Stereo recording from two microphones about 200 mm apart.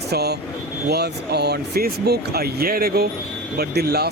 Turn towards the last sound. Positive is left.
turn(degrees=-55)  # may be behind; listen again after turning